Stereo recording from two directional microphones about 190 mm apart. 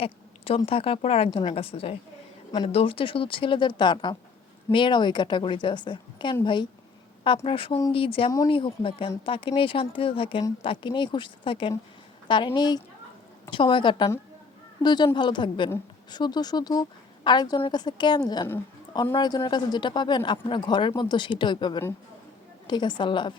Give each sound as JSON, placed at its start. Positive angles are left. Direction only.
{"t": 0.0, "sound": "a woman's voice", "side_deg": 30}
{"t": 8.3, "sound": "speech", "side_deg": 15}
{"t": 8.5, "sound": "speech", "side_deg": 25}
{"t": 19.1, "sound": "speech", "side_deg": 25}